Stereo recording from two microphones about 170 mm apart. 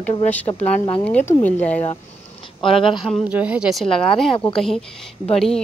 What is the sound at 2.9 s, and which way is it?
A woman's voice, centre (ahead or behind).